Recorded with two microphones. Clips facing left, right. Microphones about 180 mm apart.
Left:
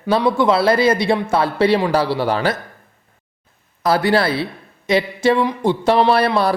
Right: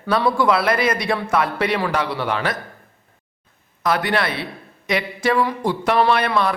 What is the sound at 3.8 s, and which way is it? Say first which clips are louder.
Speech: left 5 dB; 30° left (ahead or behind).